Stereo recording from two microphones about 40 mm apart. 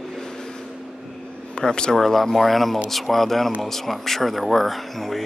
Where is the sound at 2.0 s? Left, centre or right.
Centre.